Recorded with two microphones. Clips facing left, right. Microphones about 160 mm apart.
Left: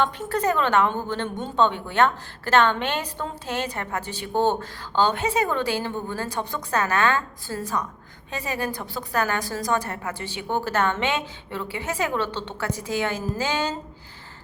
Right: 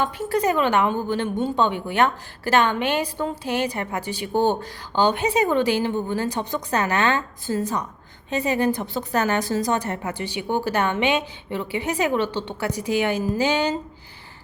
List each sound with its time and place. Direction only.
0.0 s a woman's voice: 10° right (ahead or behind)